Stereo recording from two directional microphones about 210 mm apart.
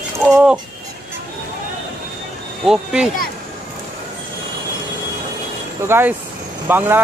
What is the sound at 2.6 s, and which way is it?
Speech, 5° right (ahead or behind).